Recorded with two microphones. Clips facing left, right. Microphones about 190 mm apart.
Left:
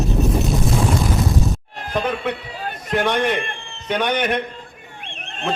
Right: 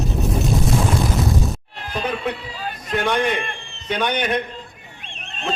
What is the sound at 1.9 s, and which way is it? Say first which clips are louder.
Music: left 2 dB; 55° left (ahead or behind).